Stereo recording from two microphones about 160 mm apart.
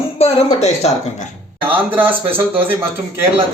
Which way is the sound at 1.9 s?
15° right (ahead or behind).